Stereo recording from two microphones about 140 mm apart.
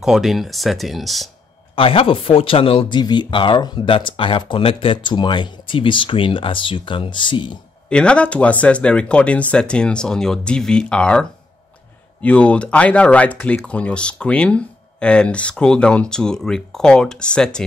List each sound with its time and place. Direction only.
0.0 s speech: centre (ahead or behind)
1.8 s speech: 40° left (ahead or behind)
7.9 s speech: 5° left (ahead or behind)